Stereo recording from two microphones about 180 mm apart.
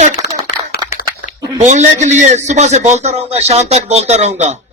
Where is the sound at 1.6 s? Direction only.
40° right (ahead or behind).